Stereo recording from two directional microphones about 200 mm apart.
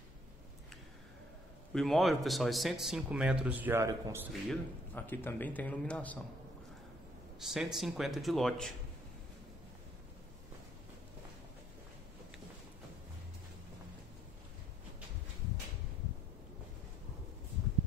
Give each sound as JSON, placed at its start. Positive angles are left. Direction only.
{"t": 1.7, "sound": "a man's voice", "side_deg": 0}
{"t": 4.3, "sound": "a man's voice", "side_deg": 5}
{"t": 7.3, "sound": "a man's voice", "side_deg": 0}